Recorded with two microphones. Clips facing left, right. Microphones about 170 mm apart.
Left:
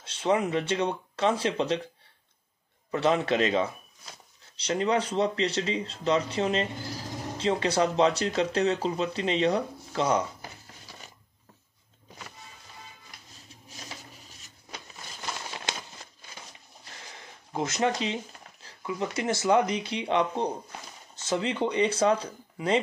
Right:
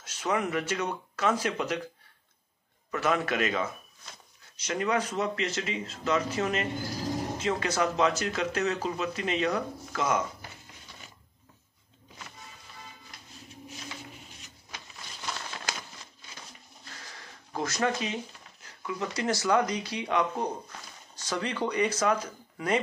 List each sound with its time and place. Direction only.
0.0 s speech: 30° left (ahead or behind)
2.9 s speech: 25° left (ahead or behind)
15.3 s a sound: 25° left (ahead or behind)
17.0 s speech: 20° left (ahead or behind)